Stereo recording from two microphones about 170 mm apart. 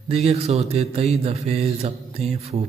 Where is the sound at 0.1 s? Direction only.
40° right (ahead or behind).